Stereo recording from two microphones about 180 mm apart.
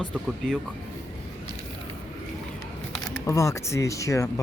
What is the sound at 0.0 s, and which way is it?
Speech, centre (ahead or behind).